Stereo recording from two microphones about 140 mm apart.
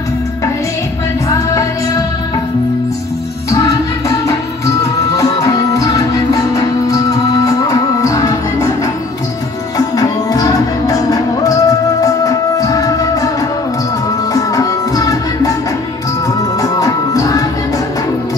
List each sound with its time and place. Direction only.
1.3 s music: 25° left (ahead or behind)
3.4 s music: 20° left (ahead or behind)
5.1 s music: 25° left (ahead or behind)
9.8 s music: 25° left (ahead or behind)
14.3 s music: 25° left (ahead or behind)
16.6 s music: 25° left (ahead or behind)